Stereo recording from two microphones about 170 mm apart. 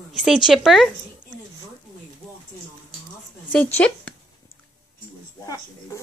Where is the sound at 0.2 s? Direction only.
Centre (ahead or behind).